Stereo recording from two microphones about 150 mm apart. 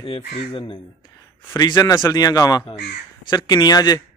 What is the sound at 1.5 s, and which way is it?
Speech, 25° left (ahead or behind).